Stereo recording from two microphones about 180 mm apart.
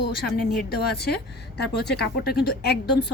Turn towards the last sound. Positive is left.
turn(degrees=65)  # may be behind; listen again after turning